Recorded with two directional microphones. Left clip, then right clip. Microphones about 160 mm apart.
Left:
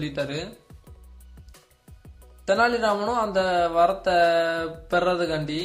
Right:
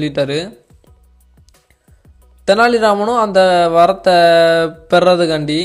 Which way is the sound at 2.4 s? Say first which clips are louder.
Right 10 dB; 50° right (ahead or behind).